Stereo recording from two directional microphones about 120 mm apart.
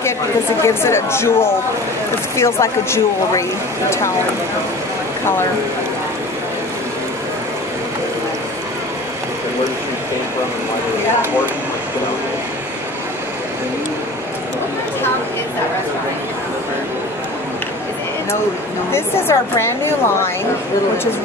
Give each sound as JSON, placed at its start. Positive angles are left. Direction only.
{"t": 0.6, "sound": "speech", "side_deg": 25}
{"t": 18.9, "sound": "speech", "side_deg": 20}